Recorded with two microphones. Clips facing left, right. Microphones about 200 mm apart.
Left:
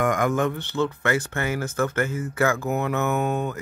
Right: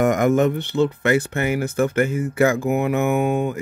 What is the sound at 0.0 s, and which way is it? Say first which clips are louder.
Speech: right 5 dB; 25° right (ahead or behind).